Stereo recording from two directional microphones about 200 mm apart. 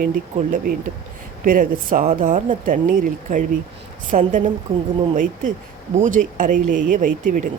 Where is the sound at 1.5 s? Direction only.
45° right (ahead or behind).